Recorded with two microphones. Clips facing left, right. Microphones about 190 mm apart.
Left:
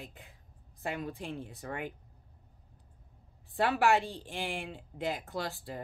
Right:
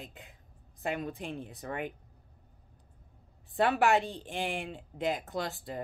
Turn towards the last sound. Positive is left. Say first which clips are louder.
# right 2 dB
turn(degrees=-20)  # may be behind; listen again after turning